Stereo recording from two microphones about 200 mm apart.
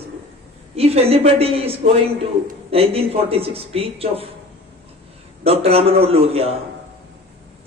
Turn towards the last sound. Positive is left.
turn(degrees=-30)  # may be behind; listen again after turning